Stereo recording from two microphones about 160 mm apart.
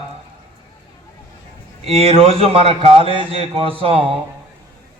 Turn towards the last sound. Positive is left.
turn(degrees=-35)  # may be behind; listen again after turning